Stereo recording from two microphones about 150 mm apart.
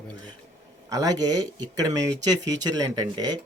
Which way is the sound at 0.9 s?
25° right (ahead or behind).